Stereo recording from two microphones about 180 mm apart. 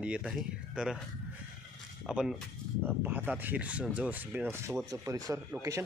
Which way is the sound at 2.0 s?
5° right (ahead or behind).